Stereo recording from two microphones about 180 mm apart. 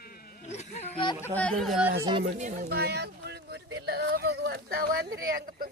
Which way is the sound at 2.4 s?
45° right (ahead or behind).